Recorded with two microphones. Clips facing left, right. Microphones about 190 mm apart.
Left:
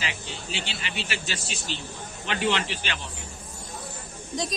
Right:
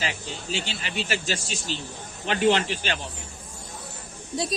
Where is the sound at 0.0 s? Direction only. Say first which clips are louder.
Right 3 dB; 40° right (ahead or behind).